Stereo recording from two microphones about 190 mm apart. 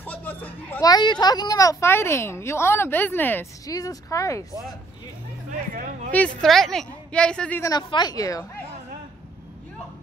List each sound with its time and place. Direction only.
0.0 s speech: 10° left (ahead or behind)
5.5 s a sound: 45° right (ahead or behind)
6.1 s a woman's voice: 5° left (ahead or behind)
7.7 s a woman's voice: 20° left (ahead or behind)